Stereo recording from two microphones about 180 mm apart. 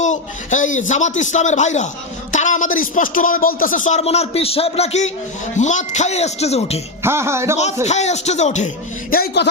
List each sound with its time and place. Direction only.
0.0 s a man's voice: 45° left (ahead or behind)
7.0 s music: 15° right (ahead or behind)
7.9 s a man's voice: 40° left (ahead or behind); by 9.5 s 65° left (ahead or behind)